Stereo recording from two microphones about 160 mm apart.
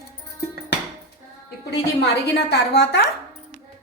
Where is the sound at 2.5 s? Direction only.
90° left.